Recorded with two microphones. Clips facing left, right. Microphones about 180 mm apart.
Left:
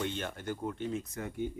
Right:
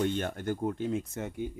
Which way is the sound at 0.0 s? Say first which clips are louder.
Right 6 dB; 50° right (ahead or behind).